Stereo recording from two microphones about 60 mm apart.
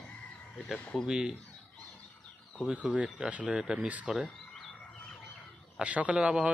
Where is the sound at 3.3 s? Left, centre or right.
Right.